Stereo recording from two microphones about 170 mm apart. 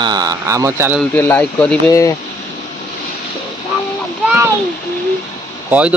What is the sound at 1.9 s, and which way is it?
Speech, 20° left (ahead or behind).